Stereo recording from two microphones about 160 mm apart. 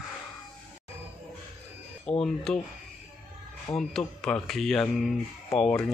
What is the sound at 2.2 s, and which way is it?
Speech, 5° left (ahead or behind).